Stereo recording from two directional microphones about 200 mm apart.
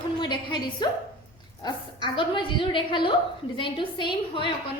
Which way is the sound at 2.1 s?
25° left (ahead or behind).